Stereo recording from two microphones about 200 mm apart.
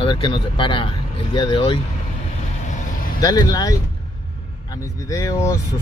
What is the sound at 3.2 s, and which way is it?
Speech, 20° left (ahead or behind).